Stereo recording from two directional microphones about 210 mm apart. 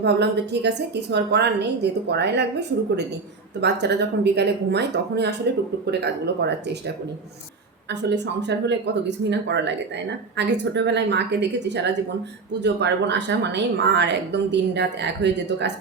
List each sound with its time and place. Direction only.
0.0 s a woman's voice: 55° right (ahead or behind)